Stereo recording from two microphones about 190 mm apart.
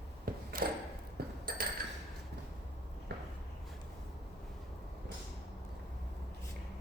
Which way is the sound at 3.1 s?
60° right (ahead or behind).